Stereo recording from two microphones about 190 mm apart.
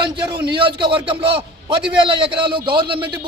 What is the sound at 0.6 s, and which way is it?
A man's voice, 25° right (ahead or behind).